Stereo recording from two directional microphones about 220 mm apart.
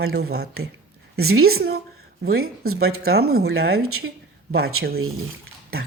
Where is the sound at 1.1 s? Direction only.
75° right (ahead or behind).